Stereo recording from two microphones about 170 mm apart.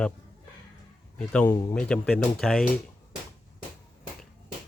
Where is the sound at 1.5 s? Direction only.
20° left (ahead or behind).